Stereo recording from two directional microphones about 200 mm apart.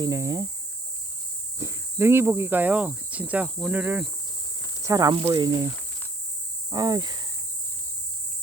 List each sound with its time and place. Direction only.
0.0 s speech: 15° right (ahead or behind)
1.5 s speech: 15° right (ahead or behind)
5.2 s cricket: 25° right (ahead or behind)